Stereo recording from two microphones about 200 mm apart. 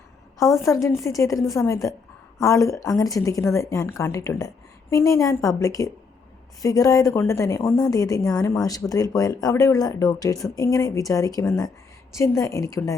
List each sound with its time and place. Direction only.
0.4 s a woman's voice: 15° left (ahead or behind)